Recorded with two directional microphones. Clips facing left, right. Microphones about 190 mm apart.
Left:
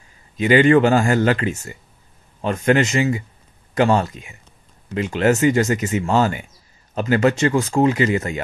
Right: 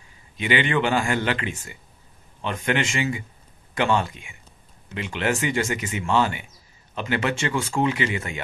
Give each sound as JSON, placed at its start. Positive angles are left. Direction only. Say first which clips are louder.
{"t": 0.4, "sound": "speech", "louder": "left 9 dB", "side_deg": 40}